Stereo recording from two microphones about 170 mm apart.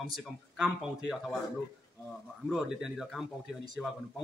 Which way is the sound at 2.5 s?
5° right (ahead or behind).